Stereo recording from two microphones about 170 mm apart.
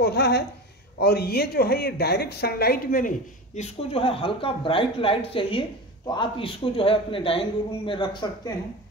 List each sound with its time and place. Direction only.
0.0 s a woman's voice: 75° left (ahead or behind); by 3.6 s 55° left (ahead or behind)
3.9 s speech: 35° left (ahead or behind)